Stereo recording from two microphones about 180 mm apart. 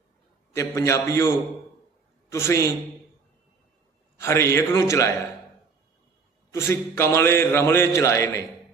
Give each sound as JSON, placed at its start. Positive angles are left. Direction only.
{"t": 0.5, "sound": "speech", "side_deg": 15}
{"t": 2.3, "sound": "speech", "side_deg": 15}
{"t": 4.2, "sound": "speech", "side_deg": 15}
{"t": 6.5, "sound": "speech", "side_deg": 15}